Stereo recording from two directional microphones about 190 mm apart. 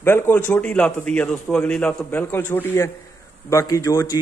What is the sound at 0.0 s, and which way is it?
A man's voice, 10° left (ahead or behind).